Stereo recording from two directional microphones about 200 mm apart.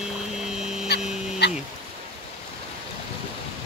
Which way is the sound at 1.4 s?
55° left (ahead or behind).